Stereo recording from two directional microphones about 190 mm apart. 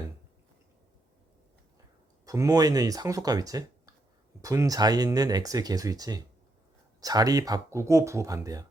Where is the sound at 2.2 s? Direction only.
15° right (ahead or behind).